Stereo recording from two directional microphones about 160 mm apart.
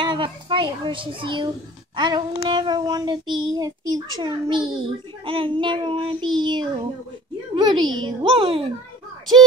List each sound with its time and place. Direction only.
0.0 s a child's voice: 30° right (ahead or behind)